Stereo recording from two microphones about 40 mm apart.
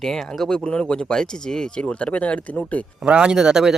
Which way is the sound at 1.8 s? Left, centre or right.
Left.